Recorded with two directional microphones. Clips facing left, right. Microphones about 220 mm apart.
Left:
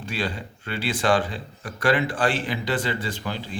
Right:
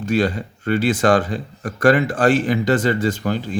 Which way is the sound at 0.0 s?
45° right (ahead or behind).